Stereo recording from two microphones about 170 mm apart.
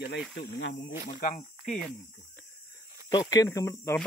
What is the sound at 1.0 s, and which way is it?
Speech, 55° left (ahead or behind).